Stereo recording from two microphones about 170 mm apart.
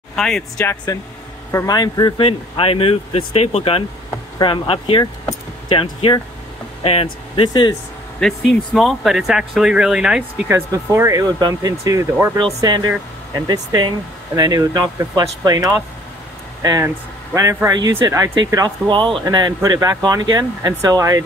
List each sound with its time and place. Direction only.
0.1 s vehicle: 5° left (ahead or behind)
0.6 s speech: 20° left (ahead or behind)
8.2 s speech: centre (ahead or behind)
10.5 s speech: 15° right (ahead or behind)